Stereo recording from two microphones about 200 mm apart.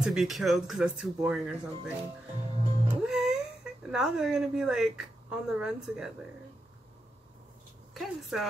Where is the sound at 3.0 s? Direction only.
5° right (ahead or behind).